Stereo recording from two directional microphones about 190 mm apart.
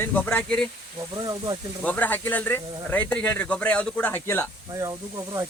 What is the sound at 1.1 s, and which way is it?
Speech, 20° right (ahead or behind).